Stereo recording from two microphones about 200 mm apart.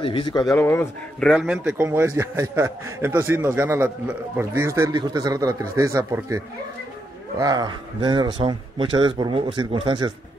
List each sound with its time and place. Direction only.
0.0 s speech: 25° left (ahead or behind)
0.5 s a man's voice: 10° left (ahead or behind); by 10.1 s 20° right (ahead or behind)